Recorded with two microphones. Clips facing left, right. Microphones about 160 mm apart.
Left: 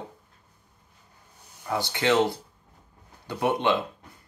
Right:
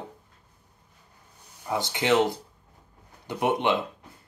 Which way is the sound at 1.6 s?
20° right (ahead or behind).